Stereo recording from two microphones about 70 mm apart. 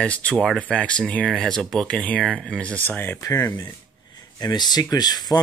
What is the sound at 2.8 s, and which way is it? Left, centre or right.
Speech, left.